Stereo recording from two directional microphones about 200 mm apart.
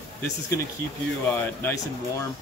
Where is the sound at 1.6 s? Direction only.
15° left (ahead or behind).